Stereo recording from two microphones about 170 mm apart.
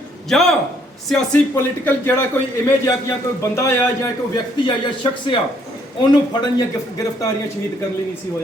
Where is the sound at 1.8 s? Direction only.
15° left (ahead or behind).